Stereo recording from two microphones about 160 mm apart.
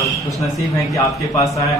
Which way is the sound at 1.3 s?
20° left (ahead or behind).